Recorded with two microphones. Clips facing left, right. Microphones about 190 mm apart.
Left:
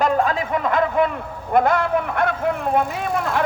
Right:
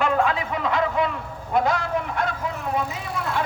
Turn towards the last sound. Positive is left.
turn(degrees=50)  # may be behind; listen again after turning